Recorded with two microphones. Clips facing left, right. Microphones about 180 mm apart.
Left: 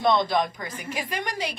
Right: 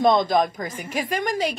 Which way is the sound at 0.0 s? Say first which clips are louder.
Right 4 dB; 45° right (ahead or behind).